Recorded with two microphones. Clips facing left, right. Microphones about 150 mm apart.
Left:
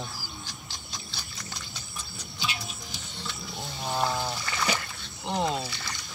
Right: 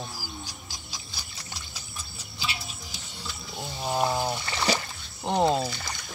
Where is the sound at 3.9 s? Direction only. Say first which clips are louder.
Right 2 dB; 20° right (ahead or behind).